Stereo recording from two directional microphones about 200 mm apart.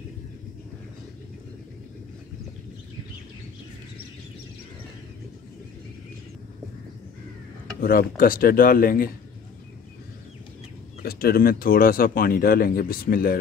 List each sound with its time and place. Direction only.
7.8 s speech: 45° left (ahead or behind)
11.0 s speech: 50° left (ahead or behind)